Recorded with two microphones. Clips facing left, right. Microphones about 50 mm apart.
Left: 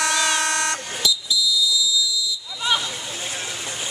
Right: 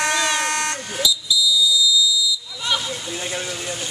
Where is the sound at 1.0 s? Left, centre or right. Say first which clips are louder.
Right 1 dB; left.